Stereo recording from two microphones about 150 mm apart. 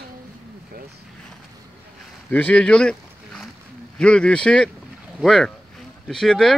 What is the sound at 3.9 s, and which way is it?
Speech, 5° left (ahead or behind).